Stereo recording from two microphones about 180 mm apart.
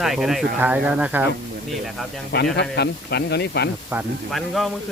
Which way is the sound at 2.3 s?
70° left (ahead or behind).